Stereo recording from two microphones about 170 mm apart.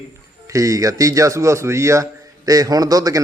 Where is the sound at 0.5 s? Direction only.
20° right (ahead or behind).